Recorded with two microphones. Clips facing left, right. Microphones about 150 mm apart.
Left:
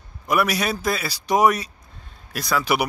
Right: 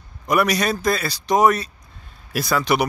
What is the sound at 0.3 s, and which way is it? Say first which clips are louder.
Speech: right 2 dB; 5° left (ahead or behind).